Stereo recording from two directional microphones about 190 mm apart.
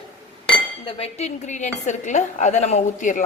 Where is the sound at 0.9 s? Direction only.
30° left (ahead or behind).